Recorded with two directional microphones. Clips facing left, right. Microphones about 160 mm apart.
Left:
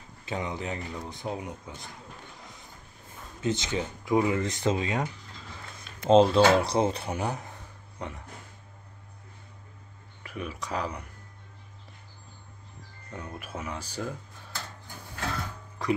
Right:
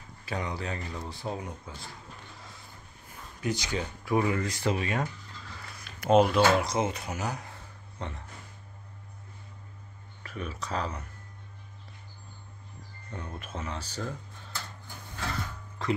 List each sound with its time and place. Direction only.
0.2 s speech: 20° left (ahead or behind)
2.3 s a sound: 20° left (ahead or behind)
5.8 s speech: 25° left (ahead or behind)
8.0 s speech: 10° left (ahead or behind)
10.2 s speech: 10° left (ahead or behind)
13.1 s speech: 10° left (ahead or behind)